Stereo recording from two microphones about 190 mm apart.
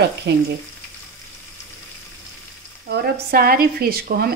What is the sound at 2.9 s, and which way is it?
Speech, 55° right (ahead or behind).